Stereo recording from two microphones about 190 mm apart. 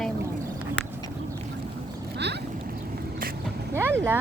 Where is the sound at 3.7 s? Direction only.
15° right (ahead or behind).